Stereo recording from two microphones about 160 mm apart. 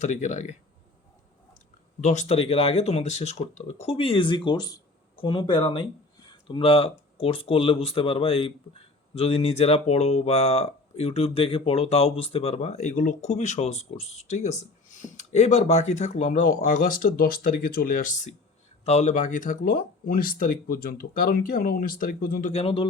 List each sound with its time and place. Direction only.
0.0 s speech: 50° left (ahead or behind)
2.0 s speech: 45° left (ahead or behind); by 22.5 s 65° left (ahead or behind)
22.5 s speech: 35° left (ahead or behind)